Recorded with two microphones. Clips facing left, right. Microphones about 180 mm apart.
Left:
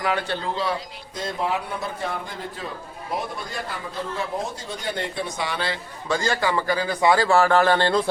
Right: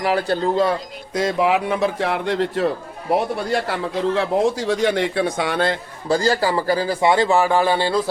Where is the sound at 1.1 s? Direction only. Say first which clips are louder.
Right 8 dB; 90° right; by 6.2 s 50° right (ahead or behind).